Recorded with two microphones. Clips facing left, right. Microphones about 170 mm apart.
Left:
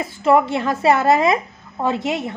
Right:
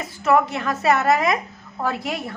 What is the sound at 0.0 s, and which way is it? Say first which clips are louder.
A woman's voice: left 3 dB; 25° left (ahead or behind).